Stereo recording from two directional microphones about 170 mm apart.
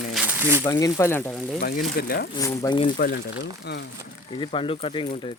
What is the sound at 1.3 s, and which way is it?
Speech, centre (ahead or behind).